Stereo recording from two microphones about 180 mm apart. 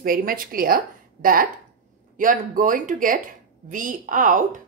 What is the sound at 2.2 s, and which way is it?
A woman's voice, 50° right (ahead or behind).